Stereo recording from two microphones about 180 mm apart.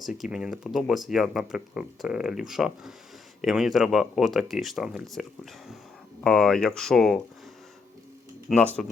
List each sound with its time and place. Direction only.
0.0 s speech: 5° right (ahead or behind)
8.4 s speech: 5° left (ahead or behind)